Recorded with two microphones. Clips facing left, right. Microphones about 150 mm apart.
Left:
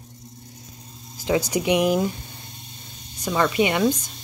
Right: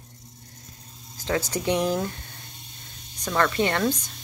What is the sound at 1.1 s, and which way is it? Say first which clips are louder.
Speech: left 5 dB; 10° left (ahead or behind).